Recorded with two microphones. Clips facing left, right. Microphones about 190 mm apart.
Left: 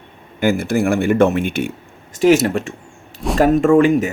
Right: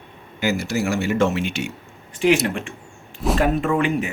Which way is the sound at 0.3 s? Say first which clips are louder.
Left 6 dB; 55° left (ahead or behind).